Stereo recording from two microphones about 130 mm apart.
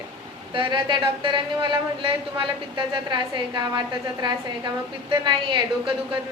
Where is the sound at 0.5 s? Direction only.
40° right (ahead or behind).